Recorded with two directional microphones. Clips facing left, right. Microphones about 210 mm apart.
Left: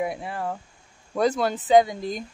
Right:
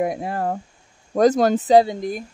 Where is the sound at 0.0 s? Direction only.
45° right (ahead or behind).